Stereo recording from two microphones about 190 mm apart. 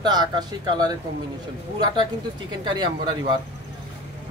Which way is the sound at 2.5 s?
25° right (ahead or behind).